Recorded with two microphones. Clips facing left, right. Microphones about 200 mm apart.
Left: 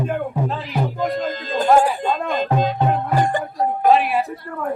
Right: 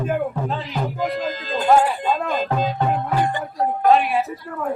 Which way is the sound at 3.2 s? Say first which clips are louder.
Left 2 dB; 45° left (ahead or behind).